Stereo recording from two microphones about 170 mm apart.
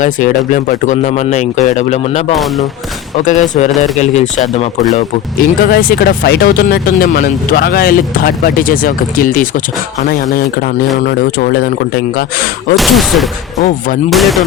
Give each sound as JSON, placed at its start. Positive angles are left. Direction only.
{"t": 0.0, "sound": "speech", "side_deg": 50}
{"t": 3.2, "sound": "speech", "side_deg": 45}
{"t": 5.4, "sound": "speech", "side_deg": 60}
{"t": 12.7, "sound": "speech", "side_deg": 0}
{"t": 13.7, "sound": "speech", "side_deg": 50}
{"t": 14.1, "sound": "speech", "side_deg": 0}